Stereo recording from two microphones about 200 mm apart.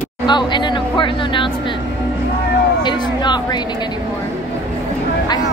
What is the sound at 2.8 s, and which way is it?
Speech, 20° left (ahead or behind).